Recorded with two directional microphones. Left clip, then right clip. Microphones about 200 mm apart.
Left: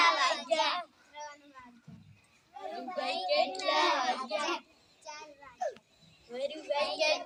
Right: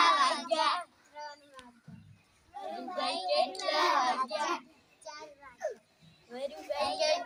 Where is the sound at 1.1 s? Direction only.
15° right (ahead or behind).